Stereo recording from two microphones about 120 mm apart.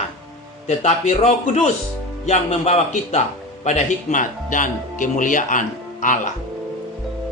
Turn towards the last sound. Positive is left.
turn(degrees=90)